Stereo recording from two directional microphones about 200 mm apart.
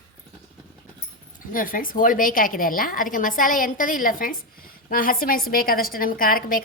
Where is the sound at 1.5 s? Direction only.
45° left (ahead or behind).